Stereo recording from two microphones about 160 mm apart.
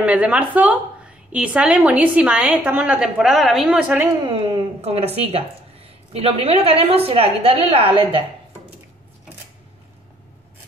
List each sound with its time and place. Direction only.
0.0 s a woman's voice: 10° right (ahead or behind)
4.3 s speech: 35° right (ahead or behind)